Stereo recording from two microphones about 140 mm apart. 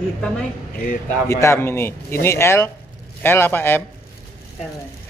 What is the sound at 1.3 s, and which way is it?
A man's voice, 20° left (ahead or behind).